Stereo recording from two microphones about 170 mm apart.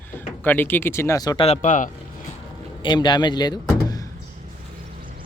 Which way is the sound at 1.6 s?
50° left (ahead or behind).